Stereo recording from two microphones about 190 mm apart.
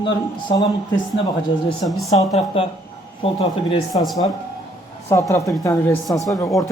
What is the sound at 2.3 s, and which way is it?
Speech, 30° left (ahead or behind).